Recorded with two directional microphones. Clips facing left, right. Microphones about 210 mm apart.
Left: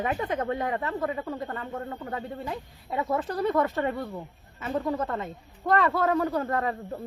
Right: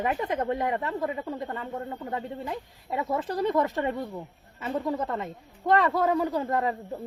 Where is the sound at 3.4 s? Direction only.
25° right (ahead or behind).